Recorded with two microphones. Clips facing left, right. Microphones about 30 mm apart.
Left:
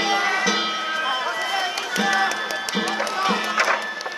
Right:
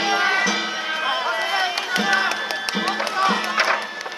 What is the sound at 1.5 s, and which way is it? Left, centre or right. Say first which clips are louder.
Run: right 2 dB; right.